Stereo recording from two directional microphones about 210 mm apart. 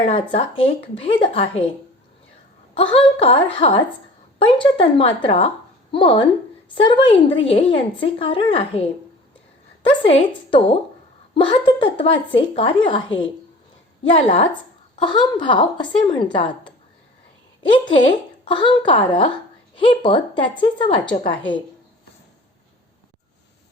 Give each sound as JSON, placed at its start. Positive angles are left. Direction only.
{"t": 0.0, "sound": "a woman's voice", "side_deg": 25}
{"t": 2.7, "sound": "a woman's voice", "side_deg": 25}
{"t": 9.8, "sound": "a woman's voice", "side_deg": 25}
{"t": 14.2, "sound": "a woman's voice", "side_deg": 25}